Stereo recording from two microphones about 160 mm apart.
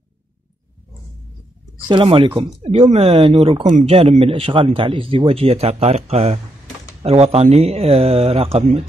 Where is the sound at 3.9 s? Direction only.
35° right (ahead or behind).